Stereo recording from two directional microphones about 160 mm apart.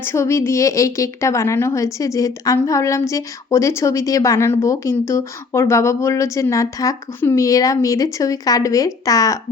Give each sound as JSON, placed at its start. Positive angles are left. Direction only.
{"t": 0.0, "sound": "a woman's voice", "side_deg": 15}